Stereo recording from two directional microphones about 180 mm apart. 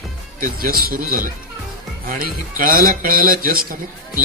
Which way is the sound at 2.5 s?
50° right (ahead or behind).